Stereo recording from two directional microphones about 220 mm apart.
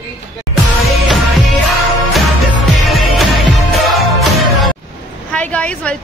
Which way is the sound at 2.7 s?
Centre (ahead or behind).